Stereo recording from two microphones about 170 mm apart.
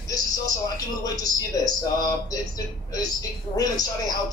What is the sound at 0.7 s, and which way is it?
A man's voice, 20° left (ahead or behind).